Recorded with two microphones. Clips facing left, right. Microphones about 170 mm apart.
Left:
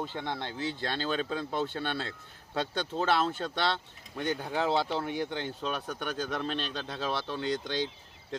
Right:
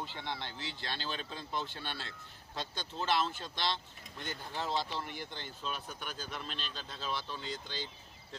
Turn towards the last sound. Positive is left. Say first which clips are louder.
# left 11 dB
turn(degrees=75)  # may be behind; listen again after turning